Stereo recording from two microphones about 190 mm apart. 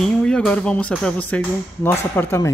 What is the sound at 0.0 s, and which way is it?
Speech, 5° left (ahead or behind).